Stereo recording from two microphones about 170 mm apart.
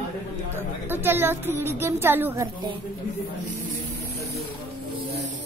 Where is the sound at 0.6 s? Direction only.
10° right (ahead or behind).